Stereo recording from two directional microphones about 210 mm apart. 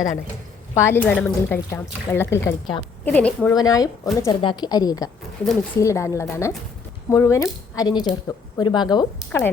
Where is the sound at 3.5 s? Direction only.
15° left (ahead or behind).